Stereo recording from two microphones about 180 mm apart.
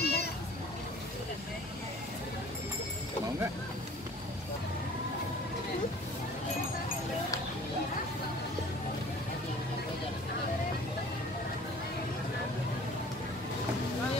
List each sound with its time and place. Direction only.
0.0 s children playing: 65° left (ahead or behind)